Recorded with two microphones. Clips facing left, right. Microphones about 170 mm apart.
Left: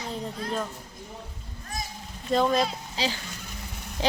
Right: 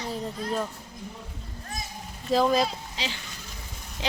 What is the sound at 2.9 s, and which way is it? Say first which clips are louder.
Speech: left 5 dB; 35° left (ahead or behind).